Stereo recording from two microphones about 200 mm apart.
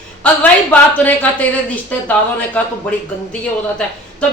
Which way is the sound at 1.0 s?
10° left (ahead or behind).